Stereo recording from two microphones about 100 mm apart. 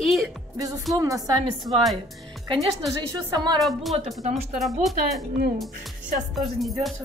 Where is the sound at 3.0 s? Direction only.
45° right (ahead or behind).